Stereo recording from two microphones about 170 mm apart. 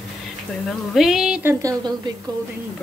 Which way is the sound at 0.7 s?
Centre (ahead or behind).